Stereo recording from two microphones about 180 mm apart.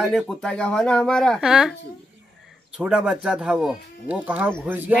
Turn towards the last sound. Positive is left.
turn(degrees=-10)  # may be behind; listen again after turning